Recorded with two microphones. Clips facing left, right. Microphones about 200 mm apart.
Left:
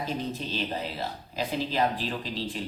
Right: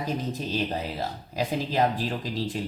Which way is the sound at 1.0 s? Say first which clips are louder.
Right 3 dB; 45° right (ahead or behind).